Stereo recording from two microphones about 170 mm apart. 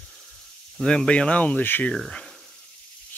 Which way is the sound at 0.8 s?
5° left (ahead or behind).